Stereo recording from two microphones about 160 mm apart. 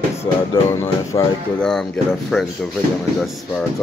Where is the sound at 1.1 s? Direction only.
30° left (ahead or behind).